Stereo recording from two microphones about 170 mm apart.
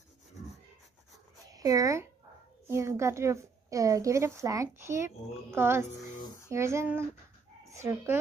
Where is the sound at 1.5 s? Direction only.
20° right (ahead or behind).